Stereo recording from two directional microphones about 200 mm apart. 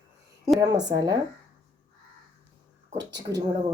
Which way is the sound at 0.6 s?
20° right (ahead or behind).